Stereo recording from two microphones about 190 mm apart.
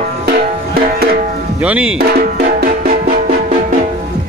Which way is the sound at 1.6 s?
5° right (ahead or behind).